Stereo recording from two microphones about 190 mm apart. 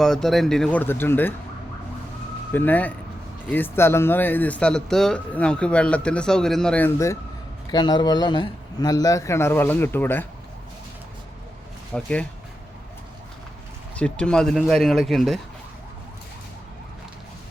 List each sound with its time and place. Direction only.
0.0 s speech: centre (ahead or behind)
2.5 s speech: 10° left (ahead or behind)
11.9 s speech: 5° left (ahead or behind)
13.9 s speech: 5° left (ahead or behind)